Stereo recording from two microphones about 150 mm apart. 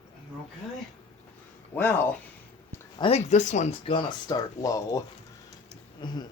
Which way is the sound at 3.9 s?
35° left (ahead or behind).